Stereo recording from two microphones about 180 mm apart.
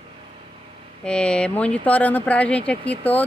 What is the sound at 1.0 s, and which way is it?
Speech, 5° left (ahead or behind).